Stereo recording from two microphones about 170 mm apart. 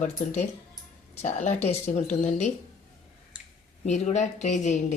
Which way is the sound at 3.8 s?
45° left (ahead or behind).